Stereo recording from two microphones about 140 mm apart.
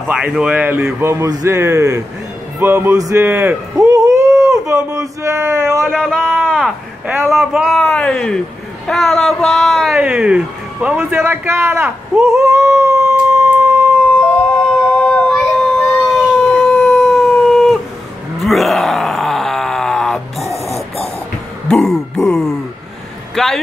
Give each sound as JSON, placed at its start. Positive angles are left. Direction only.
{"t": 0.1, "sound": "a man's voice", "side_deg": -5}
{"t": 5.9, "sound": "speech", "side_deg": 0}
{"t": 12.4, "sound": "a sound", "side_deg": -20}
{"t": 15.3, "sound": "child singing", "side_deg": 0}
{"t": 16.3, "sound": "howl", "side_deg": 10}
{"t": 17.0, "sound": "howl", "side_deg": 0}
{"t": 18.4, "sound": "groan", "side_deg": 0}
{"t": 21.6, "sound": "a sound", "side_deg": 5}
{"t": 23.3, "sound": "speech", "side_deg": 5}